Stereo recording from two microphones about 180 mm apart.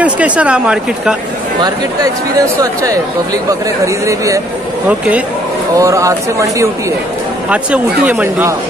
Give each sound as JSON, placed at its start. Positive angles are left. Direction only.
{"t": 0.0, "sound": "speech", "side_deg": -5}
{"t": 2.6, "sound": "speech", "side_deg": -20}
{"t": 7.4, "sound": "speech", "side_deg": -5}